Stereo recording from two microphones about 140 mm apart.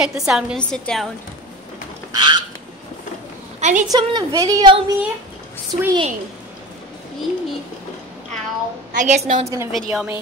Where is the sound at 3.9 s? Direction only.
25° right (ahead or behind).